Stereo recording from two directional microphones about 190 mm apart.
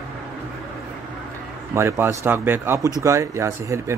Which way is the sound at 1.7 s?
15° right (ahead or behind).